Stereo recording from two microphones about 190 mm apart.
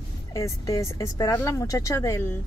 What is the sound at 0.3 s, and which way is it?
A woman's voice, 15° left (ahead or behind).